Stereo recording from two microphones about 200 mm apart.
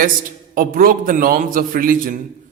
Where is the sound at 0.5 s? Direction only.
45° right (ahead or behind).